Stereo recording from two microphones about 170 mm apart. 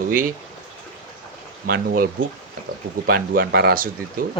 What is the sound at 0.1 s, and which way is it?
Speech, 55° right (ahead or behind).